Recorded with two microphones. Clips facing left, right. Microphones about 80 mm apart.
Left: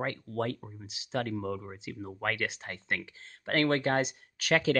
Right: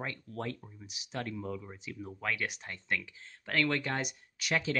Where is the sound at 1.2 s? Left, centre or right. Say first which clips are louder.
Left 3 dB; left.